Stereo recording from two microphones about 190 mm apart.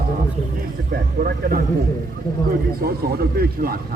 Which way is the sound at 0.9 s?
50° right (ahead or behind).